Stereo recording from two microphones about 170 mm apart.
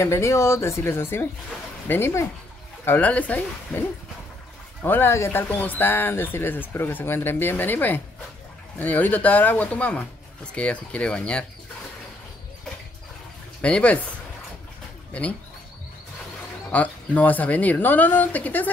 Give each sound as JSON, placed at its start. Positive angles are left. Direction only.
{"t": 0.0, "sound": "speech", "side_deg": 15}
{"t": 4.8, "sound": "speech", "side_deg": 10}
{"t": 13.6, "sound": "speech", "side_deg": 5}
{"t": 16.7, "sound": "speech", "side_deg": 10}